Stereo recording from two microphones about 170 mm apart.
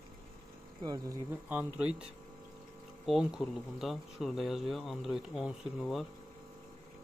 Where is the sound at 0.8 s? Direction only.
25° right (ahead or behind).